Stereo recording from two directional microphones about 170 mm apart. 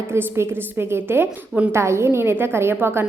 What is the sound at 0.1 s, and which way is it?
A woman's voice, 15° right (ahead or behind).